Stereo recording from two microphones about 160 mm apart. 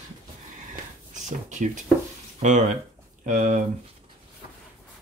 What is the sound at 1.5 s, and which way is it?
Speech, 50° right (ahead or behind).